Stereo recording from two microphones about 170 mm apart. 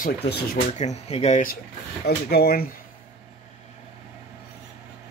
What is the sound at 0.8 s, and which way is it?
Speech, 40° left (ahead or behind).